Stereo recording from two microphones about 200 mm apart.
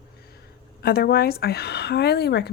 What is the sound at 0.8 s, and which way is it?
Speech, 50° left (ahead or behind).